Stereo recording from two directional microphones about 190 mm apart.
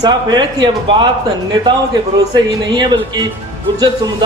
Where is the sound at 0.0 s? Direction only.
20° right (ahead or behind).